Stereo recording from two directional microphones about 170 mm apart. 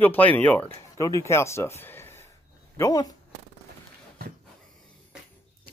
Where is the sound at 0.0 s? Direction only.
10° left (ahead or behind).